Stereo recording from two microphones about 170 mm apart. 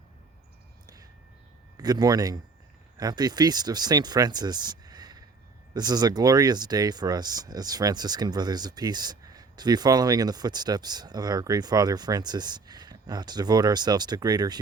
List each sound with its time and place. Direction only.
1.7 s speech: 20° right (ahead or behind)